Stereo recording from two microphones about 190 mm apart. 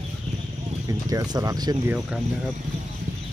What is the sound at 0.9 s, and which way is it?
Speech, 20° right (ahead or behind).